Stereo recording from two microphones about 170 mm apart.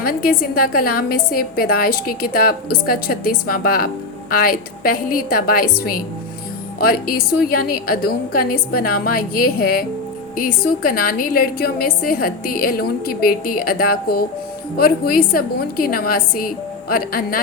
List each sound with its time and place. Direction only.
0.0 s a woman's voice: 60° left (ahead or behind)